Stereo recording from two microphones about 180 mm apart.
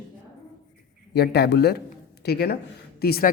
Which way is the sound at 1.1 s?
65° left (ahead or behind).